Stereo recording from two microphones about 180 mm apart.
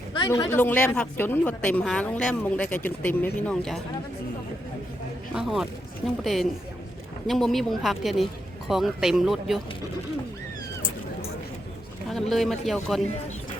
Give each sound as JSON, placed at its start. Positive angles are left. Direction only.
{"t": 0.3, "sound": "speech", "side_deg": 20}
{"t": 0.6, "sound": "speech", "side_deg": 10}
{"t": 5.3, "sound": "speech", "side_deg": -5}
{"t": 12.3, "sound": "speech", "side_deg": 0}